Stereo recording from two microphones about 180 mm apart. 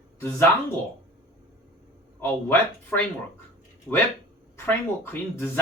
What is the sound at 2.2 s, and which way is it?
Speech, 10° left (ahead or behind).